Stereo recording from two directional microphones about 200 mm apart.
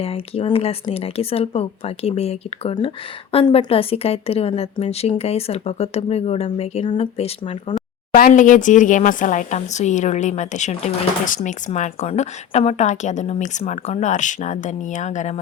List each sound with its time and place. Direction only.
0.0 s speech: 30° left (ahead or behind)
8.1 s speech: 40° left (ahead or behind)